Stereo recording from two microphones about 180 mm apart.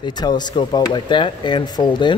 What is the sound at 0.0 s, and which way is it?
A man's voice, 25° left (ahead or behind).